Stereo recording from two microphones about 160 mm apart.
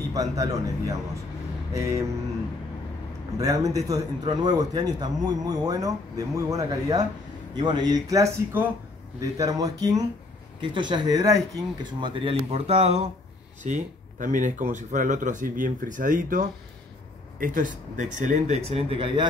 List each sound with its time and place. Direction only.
0.1 s a man's voice: 20° right (ahead or behind)
3.3 s a man's voice: 20° right (ahead or behind); by 18.6 s 50° right (ahead or behind)
18.7 s speech: 35° right (ahead or behind)